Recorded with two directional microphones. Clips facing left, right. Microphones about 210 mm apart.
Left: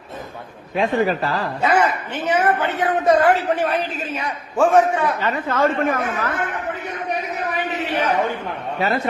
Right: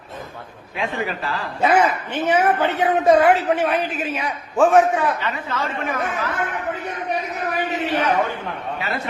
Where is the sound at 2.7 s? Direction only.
25° right (ahead or behind).